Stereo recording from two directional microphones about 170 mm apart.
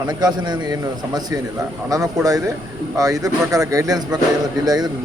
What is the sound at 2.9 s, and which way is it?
A man's voice, 20° right (ahead or behind).